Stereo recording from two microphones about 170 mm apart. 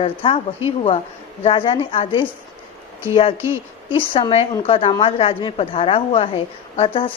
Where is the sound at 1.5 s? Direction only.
30° left (ahead or behind).